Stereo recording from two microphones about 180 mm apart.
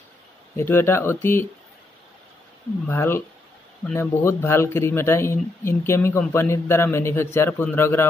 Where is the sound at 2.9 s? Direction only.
15° left (ahead or behind).